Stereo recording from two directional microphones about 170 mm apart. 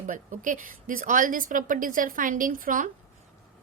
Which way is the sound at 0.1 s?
50° right (ahead or behind).